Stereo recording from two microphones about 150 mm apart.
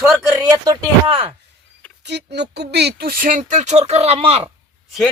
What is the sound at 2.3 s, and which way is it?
Speech, 90° right.